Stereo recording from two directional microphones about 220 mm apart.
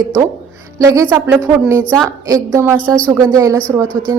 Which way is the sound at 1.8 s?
5° left (ahead or behind).